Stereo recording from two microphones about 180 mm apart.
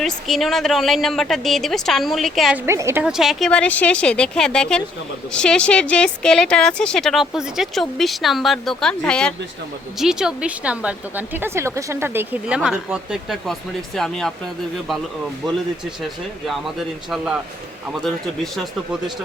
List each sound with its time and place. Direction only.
0.0 s speech: centre (ahead or behind)
2.6 s a woman's voice: 15° right (ahead or behind)
3.0 s a woman's voice: 5° right (ahead or behind)
17.1 s speech: 5° right (ahead or behind)
18.5 s speech: centre (ahead or behind)